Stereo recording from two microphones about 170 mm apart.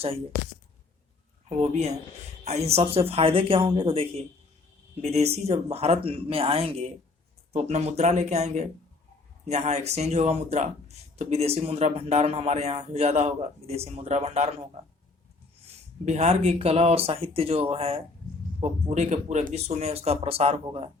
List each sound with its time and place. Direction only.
1.5 s speech: 40° right (ahead or behind)
16.0 s speech: 40° right (ahead or behind)